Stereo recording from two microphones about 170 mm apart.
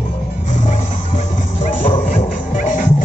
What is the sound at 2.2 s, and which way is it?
Music, 50° left (ahead or behind).